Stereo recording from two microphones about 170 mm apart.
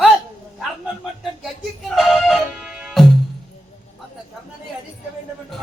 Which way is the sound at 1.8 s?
Centre (ahead or behind).